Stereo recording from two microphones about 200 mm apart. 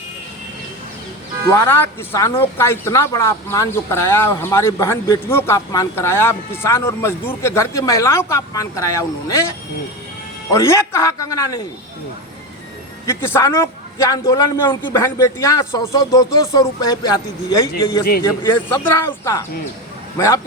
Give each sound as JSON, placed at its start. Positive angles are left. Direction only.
{"t": 1.5, "sound": "speech", "side_deg": 10}
{"t": 10.5, "sound": "speech", "side_deg": 15}
{"t": 13.1, "sound": "speech", "side_deg": 15}
{"t": 18.7, "sound": "speech", "side_deg": 15}